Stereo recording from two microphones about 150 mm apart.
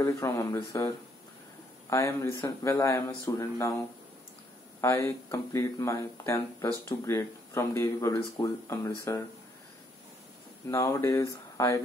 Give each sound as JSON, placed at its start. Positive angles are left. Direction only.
{"t": 0.0, "sound": "speech", "side_deg": 20}
{"t": 4.8, "sound": "speech", "side_deg": 20}
{"t": 10.7, "sound": "speech", "side_deg": 20}